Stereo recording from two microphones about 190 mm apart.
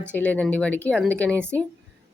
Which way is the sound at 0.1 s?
10° left (ahead or behind).